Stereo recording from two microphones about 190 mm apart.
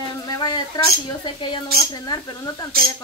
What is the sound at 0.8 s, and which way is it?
A woman's voice, 20° left (ahead or behind).